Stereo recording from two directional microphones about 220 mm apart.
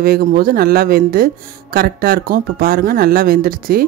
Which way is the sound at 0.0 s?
40° right (ahead or behind).